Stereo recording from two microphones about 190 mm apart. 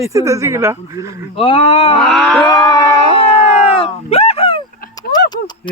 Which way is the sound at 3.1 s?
30° left (ahead or behind).